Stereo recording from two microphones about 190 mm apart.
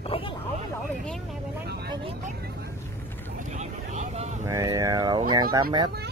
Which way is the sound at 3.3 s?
40° right (ahead or behind).